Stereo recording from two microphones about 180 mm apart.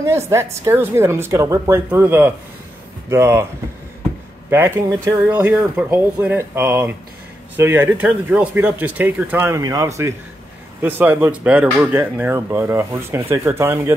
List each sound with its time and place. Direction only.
0.0 s speech: 15° right (ahead or behind)
4.5 s speech: 10° right (ahead or behind)